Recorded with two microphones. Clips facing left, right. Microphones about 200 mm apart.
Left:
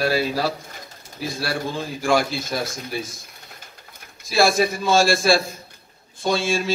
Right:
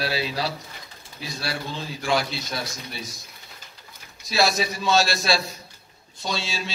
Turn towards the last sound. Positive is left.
turn(degrees=50)  # may be behind; listen again after turning